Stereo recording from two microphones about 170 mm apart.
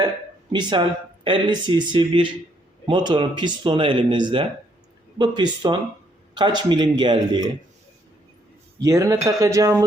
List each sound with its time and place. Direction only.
0.5 s speech: 25° right (ahead or behind)
8.8 s speech: 20° right (ahead or behind)